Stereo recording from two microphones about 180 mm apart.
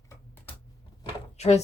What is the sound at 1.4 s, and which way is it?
Speech, 35° left (ahead or behind).